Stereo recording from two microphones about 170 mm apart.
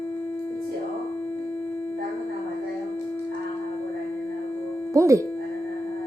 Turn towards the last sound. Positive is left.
turn(degrees=-20)  # may be behind; listen again after turning